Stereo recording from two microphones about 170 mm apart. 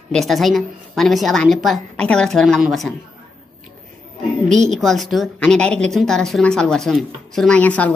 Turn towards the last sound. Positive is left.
turn(degrees=10)  # may be behind; listen again after turning